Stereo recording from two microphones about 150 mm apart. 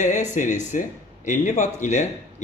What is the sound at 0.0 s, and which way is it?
A man's voice, 50° left (ahead or behind).